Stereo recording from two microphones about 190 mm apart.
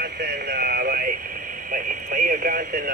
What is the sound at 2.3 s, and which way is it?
Speech, 50° right (ahead or behind).